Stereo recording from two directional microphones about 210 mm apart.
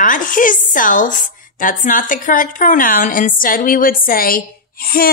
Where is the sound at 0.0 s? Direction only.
40° left (ahead or behind).